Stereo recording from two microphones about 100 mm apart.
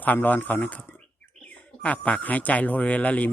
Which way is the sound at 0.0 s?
15° left (ahead or behind).